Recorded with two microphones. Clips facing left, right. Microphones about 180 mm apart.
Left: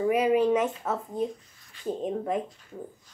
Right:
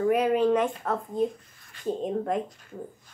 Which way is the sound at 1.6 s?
55° right (ahead or behind).